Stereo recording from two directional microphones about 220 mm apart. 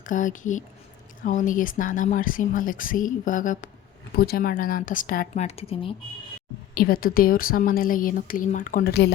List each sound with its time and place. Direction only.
0.0 s speech: 35° left (ahead or behind)
6.7 s speech: 40° left (ahead or behind)